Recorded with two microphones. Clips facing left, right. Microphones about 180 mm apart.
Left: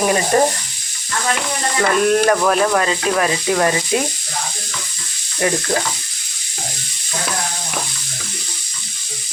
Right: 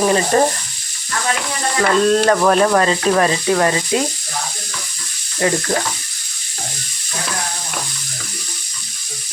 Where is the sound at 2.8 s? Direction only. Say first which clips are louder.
Right 3 dB; 30° right (ahead or behind).